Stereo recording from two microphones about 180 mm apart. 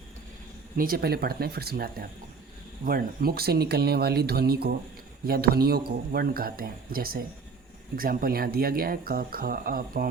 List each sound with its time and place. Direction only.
0.8 s speech: 55° right (ahead or behind)